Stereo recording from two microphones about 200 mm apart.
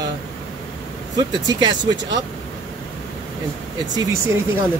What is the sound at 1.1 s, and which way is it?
Speech, 20° right (ahead or behind).